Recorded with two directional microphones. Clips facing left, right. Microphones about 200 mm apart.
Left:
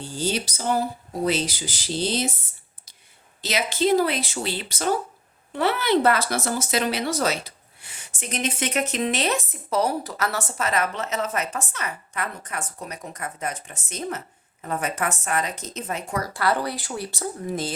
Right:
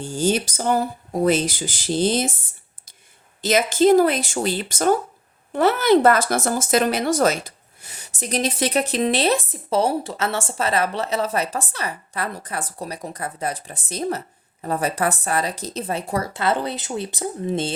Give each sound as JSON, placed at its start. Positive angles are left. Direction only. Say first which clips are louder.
{"t": 0.0, "sound": "speech", "louder": "right 6 dB", "side_deg": -50}
{"t": 3.4, "sound": "speech", "louder": "right 7 dB", "side_deg": -50}